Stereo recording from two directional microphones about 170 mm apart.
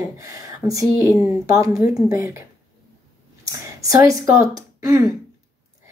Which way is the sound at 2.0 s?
15° right (ahead or behind).